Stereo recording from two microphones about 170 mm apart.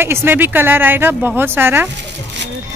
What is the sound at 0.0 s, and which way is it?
Speech, 15° right (ahead or behind).